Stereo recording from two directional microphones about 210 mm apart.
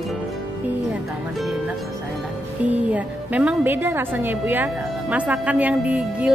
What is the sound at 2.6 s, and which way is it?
A woman's voice, 5° right (ahead or behind).